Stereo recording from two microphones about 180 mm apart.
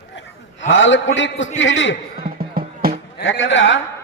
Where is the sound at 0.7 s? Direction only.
90° left.